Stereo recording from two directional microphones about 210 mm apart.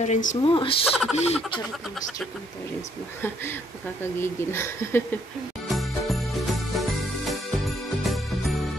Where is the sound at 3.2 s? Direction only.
10° left (ahead or behind).